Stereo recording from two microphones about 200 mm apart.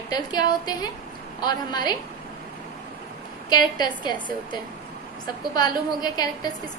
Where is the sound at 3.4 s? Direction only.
20° left (ahead or behind).